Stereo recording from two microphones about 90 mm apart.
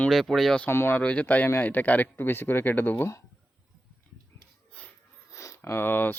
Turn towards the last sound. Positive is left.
turn(degrees=20)  # may be behind; listen again after turning